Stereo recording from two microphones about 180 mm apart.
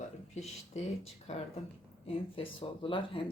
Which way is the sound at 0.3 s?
40° left (ahead or behind).